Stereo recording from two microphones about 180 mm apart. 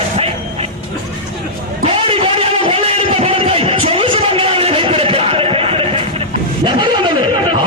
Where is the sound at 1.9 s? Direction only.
30° right (ahead or behind).